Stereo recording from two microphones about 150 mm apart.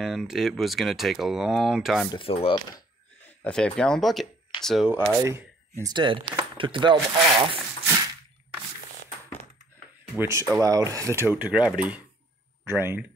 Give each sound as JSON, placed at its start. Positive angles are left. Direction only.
{"t": 0.0, "sound": "speech", "side_deg": 0}
{"t": 2.1, "sound": "speech", "side_deg": 40}
{"t": 3.4, "sound": "speech", "side_deg": 5}
{"t": 5.2, "sound": "speech", "side_deg": -20}
{"t": 10.1, "sound": "speech", "side_deg": -15}